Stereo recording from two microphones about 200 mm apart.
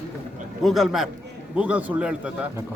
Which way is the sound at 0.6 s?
Centre (ahead or behind).